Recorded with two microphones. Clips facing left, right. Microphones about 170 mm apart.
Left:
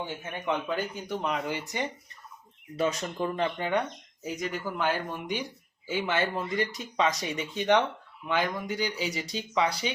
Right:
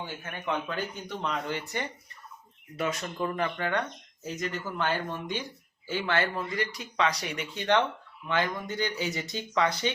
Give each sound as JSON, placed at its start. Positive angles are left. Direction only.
{"t": 0.0, "sound": "speech", "side_deg": 15}
{"t": 2.7, "sound": "speech", "side_deg": 30}